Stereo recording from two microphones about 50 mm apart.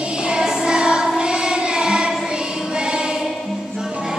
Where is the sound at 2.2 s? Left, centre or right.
Centre.